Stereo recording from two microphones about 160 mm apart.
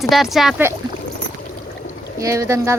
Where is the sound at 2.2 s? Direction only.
20° right (ahead or behind).